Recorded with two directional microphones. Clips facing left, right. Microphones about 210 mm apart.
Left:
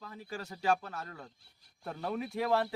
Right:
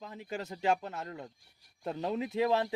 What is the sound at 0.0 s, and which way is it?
Speech, 20° right (ahead or behind).